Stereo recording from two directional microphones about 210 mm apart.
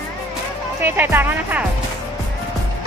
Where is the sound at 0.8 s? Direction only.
10° right (ahead or behind).